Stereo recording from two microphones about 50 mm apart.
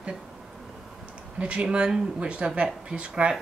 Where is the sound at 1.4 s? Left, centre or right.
Right.